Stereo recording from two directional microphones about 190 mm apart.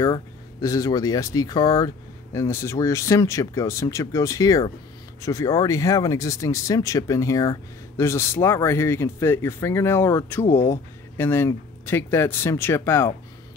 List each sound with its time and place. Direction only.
0.0 s speech: 20° left (ahead or behind)